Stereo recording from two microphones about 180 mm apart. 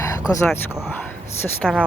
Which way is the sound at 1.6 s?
Centre (ahead or behind).